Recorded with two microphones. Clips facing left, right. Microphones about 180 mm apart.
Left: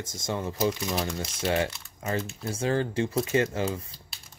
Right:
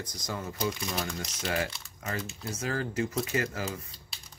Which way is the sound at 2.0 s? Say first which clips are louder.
Left 5 dB; 25° left (ahead or behind).